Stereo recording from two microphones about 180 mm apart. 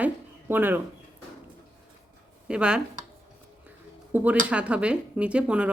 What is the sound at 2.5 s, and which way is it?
Speech, 5° right (ahead or behind).